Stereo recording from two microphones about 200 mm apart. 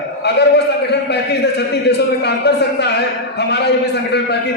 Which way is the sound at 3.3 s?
55° left (ahead or behind).